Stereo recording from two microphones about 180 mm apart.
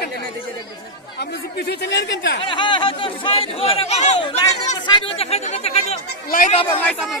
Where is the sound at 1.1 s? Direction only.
65° left (ahead or behind).